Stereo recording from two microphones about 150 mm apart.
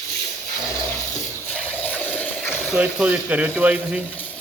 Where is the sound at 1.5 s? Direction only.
10° left (ahead or behind).